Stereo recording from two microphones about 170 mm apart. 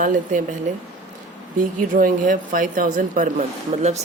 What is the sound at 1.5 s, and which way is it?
Speech, 50° right (ahead or behind).